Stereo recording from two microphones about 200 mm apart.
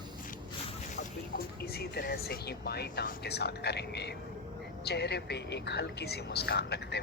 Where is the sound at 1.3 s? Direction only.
50° left (ahead or behind).